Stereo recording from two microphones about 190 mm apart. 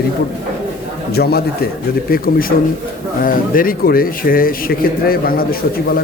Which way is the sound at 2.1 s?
50° left (ahead or behind).